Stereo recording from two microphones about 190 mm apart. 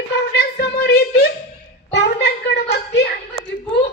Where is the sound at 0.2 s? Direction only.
60° left (ahead or behind).